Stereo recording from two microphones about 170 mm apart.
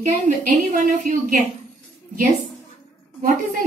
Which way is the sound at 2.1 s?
55° right (ahead or behind).